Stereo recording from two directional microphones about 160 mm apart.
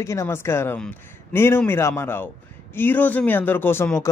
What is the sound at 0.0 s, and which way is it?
Speech, 20° left (ahead or behind).